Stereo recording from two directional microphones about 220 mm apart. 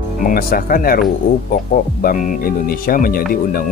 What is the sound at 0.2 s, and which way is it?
Speech, 40° left (ahead or behind).